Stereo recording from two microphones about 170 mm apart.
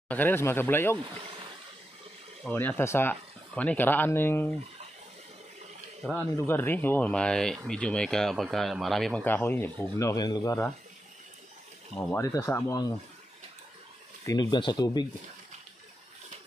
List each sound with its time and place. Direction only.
0.1 s speech: 10° left (ahead or behind)
2.4 s speech: 10° left (ahead or behind)
6.1 s speech: 15° left (ahead or behind)
11.9 s speech: 15° left (ahead or behind)
14.2 s speech: 25° left (ahead or behind)